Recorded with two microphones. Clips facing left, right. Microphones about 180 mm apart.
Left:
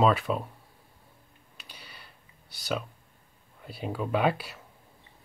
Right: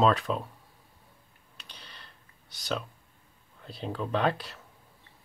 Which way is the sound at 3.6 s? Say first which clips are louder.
Left 1 dB; 10° left (ahead or behind).